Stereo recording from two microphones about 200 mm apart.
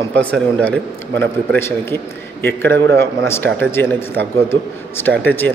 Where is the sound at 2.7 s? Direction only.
55° right (ahead or behind).